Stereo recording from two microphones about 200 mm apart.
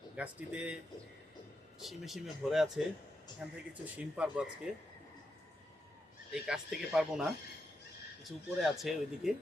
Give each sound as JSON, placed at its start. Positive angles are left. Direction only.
{"t": 0.2, "sound": "speech", "side_deg": -5}
{"t": 1.8, "sound": "speech", "side_deg": 0}
{"t": 6.3, "sound": "speech", "side_deg": 0}